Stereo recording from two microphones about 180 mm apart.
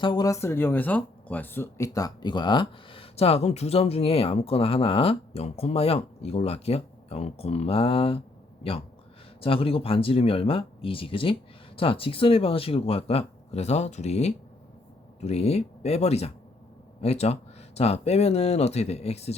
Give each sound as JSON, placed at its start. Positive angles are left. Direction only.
{"t": 0.0, "sound": "speech", "side_deg": 25}
{"t": 9.4, "sound": "speech", "side_deg": 30}